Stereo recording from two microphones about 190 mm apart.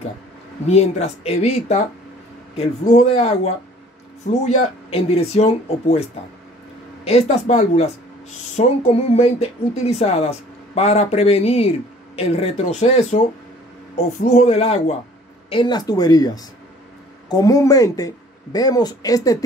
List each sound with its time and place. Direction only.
0.7 s speech: 35° left (ahead or behind)
7.1 s speech: 35° left (ahead or behind)
15.5 s speech: 20° left (ahead or behind)